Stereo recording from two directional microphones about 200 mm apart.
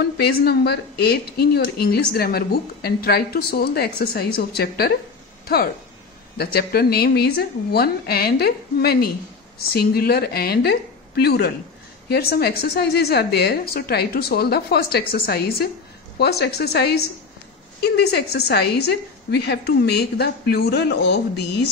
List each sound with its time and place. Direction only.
0.0 s a woman's voice: 50° left (ahead or behind)
6.3 s a woman's voice: 50° left (ahead or behind)